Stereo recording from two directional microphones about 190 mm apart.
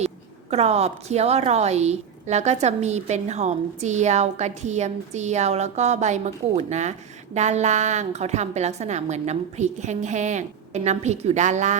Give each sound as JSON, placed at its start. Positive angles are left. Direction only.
{"t": 0.5, "sound": "a woman's voice", "side_deg": -35}